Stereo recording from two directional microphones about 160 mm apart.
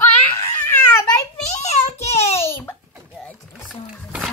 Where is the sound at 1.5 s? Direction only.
45° left (ahead or behind).